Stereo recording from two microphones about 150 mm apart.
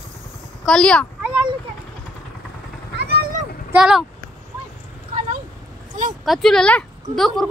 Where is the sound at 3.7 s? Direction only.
5° right (ahead or behind).